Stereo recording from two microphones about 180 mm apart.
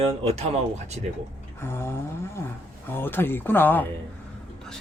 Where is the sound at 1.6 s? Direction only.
15° left (ahead or behind).